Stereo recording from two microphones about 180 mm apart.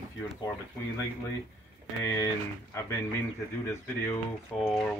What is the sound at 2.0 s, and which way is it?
Speech, 15° left (ahead or behind).